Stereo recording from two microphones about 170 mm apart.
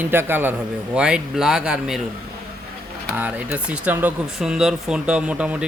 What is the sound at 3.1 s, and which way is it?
Speech, 10° right (ahead or behind).